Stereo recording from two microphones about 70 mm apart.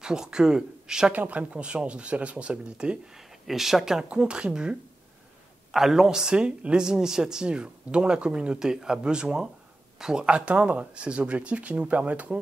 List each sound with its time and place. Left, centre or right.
0.0 s speech: centre
1.1 s speech: right
3.4 s speech: centre